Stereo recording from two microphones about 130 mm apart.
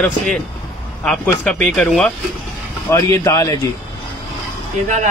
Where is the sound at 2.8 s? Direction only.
25° left (ahead or behind).